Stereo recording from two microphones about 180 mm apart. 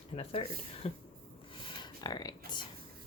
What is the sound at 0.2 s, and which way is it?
Speech, 35° left (ahead or behind).